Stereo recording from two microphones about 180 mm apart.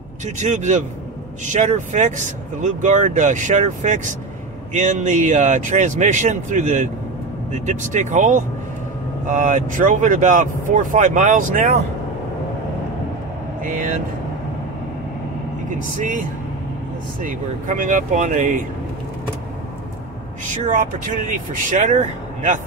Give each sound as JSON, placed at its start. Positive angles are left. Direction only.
{"t": 0.2, "sound": "speech", "side_deg": -40}
{"t": 13.6, "sound": "speech", "side_deg": -45}
{"t": 17.2, "sound": "speech", "side_deg": -45}
{"t": 20.4, "sound": "speech", "side_deg": -45}